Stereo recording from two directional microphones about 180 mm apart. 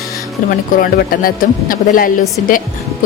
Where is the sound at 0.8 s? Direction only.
50° left (ahead or behind).